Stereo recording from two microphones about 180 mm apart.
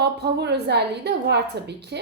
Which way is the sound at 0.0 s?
65° right (ahead or behind).